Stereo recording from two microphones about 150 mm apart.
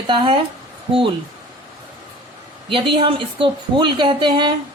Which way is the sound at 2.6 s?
35° right (ahead or behind).